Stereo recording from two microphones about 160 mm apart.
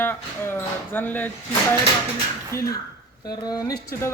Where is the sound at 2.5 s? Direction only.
20° left (ahead or behind).